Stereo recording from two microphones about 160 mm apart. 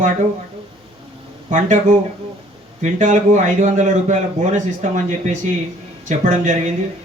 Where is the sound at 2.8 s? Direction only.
50° right (ahead or behind).